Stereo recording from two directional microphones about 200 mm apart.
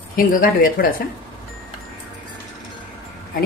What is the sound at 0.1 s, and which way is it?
Speech, 45° left (ahead or behind).